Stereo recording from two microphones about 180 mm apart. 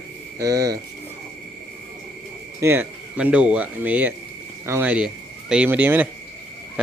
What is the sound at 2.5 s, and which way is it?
Speech, 15° right (ahead or behind).